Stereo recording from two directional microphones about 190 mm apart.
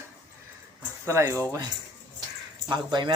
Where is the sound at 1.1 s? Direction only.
15° right (ahead or behind).